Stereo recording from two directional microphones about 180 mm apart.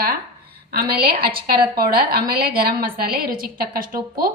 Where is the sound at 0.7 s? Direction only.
60° right (ahead or behind).